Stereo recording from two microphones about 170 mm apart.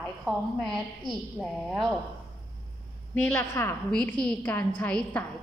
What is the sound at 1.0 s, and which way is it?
Speech, centre (ahead or behind).